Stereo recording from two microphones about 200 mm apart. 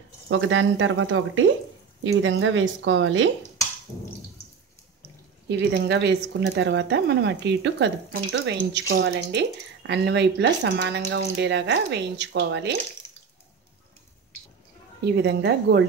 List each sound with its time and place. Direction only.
0.3 s speech: 80° right
2.0 s speech: 75° right (ahead or behind)
5.5 s speech: 60° right (ahead or behind)
15.2 s speech: 55° right (ahead or behind)